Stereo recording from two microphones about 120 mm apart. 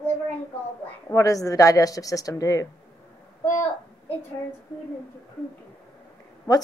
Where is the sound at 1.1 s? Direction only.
30° left (ahead or behind).